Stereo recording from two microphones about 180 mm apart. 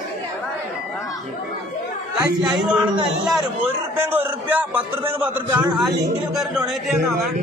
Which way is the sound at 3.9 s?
10° right (ahead or behind).